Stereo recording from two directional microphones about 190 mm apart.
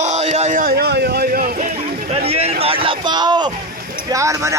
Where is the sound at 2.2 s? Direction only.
30° right (ahead or behind).